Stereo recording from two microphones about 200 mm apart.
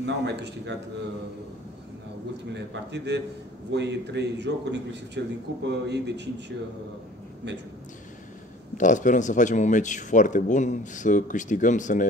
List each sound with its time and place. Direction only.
0.0 s a man's voice: 60° right (ahead or behind)
2.5 s a man's voice: 60° right (ahead or behind)
8.7 s speech: 40° left (ahead or behind)